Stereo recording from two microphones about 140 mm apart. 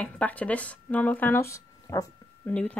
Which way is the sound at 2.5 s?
10° left (ahead or behind).